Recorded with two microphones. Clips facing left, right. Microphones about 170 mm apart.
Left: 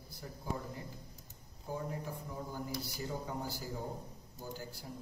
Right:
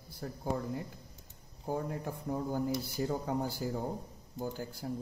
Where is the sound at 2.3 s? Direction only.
60° right (ahead or behind).